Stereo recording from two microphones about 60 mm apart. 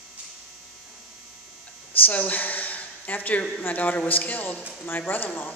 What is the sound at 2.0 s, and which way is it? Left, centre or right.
Speech, left.